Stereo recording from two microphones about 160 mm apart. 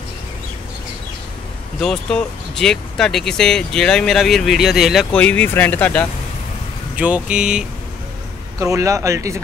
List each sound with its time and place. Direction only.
1.8 s speech: 5° left (ahead or behind)
7.0 s speech: 5° right (ahead or behind)
8.5 s speech: 20° right (ahead or behind)